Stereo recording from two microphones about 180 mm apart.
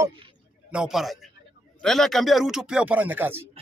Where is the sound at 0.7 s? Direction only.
5° right (ahead or behind).